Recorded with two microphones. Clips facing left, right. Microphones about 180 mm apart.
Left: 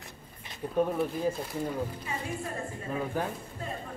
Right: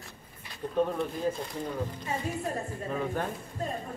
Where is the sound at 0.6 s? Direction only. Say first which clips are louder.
Even; 10° left (ahead or behind).